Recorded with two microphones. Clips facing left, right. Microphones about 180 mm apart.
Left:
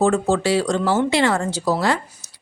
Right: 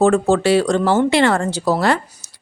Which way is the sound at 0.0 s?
55° right (ahead or behind).